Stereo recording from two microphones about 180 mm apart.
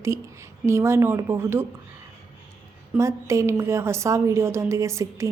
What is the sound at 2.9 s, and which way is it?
A woman's voice, 15° right (ahead or behind).